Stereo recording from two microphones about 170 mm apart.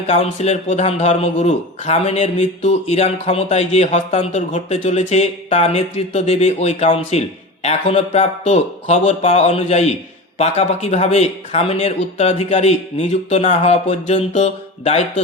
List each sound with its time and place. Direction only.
0.1 s a man's voice: 40° left (ahead or behind)